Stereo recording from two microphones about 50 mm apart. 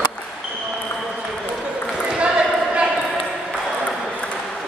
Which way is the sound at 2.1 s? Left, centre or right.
Right.